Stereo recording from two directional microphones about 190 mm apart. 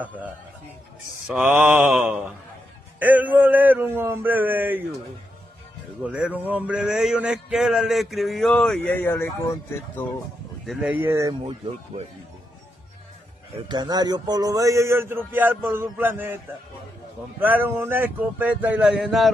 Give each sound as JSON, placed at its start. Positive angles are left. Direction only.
{"t": 1.2, "sound": "a man's voice", "side_deg": -5}
{"t": 6.0, "sound": "a man's voice", "side_deg": -5}
{"t": 10.7, "sound": "a man's voice", "side_deg": -5}
{"t": 13.7, "sound": "a man's voice", "side_deg": -20}
{"t": 17.4, "sound": "a man's voice", "side_deg": -10}